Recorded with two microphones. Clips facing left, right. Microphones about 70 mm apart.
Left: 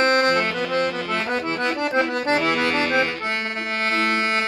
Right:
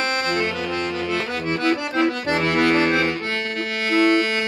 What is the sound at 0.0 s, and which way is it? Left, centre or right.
Music, left.